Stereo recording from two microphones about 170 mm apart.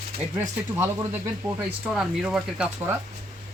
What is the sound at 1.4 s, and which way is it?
Speech, 5° right (ahead or behind).